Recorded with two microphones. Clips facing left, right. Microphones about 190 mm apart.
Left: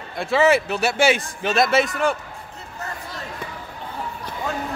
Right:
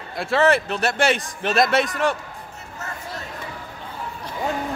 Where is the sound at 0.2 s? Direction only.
5° left (ahead or behind).